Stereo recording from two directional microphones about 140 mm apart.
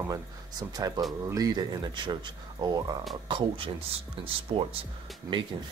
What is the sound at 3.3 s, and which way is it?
Speech, 35° right (ahead or behind).